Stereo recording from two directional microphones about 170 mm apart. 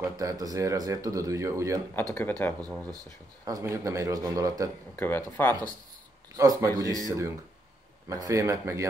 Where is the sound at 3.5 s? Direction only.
15° right (ahead or behind).